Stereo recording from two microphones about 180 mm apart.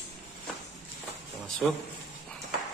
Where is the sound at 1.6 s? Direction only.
Centre (ahead or behind).